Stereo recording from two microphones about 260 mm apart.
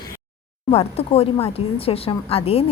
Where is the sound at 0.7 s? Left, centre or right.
Left.